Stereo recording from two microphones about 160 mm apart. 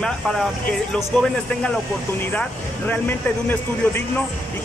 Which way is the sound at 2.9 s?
10° left (ahead or behind).